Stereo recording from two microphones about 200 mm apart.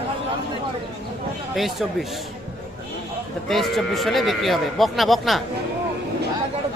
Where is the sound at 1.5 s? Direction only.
Centre (ahead or behind).